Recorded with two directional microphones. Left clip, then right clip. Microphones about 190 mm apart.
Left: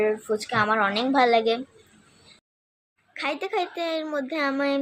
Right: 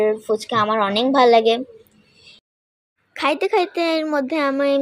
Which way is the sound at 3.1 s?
35° right (ahead or behind).